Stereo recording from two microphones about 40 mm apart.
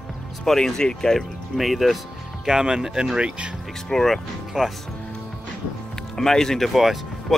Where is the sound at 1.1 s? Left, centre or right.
Centre.